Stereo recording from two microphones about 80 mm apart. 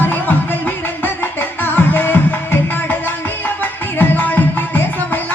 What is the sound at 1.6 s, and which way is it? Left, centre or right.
Music, left.